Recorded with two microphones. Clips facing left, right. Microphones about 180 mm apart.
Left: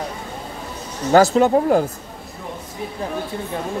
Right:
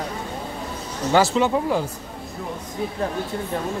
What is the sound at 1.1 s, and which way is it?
Speech, 40° left (ahead or behind).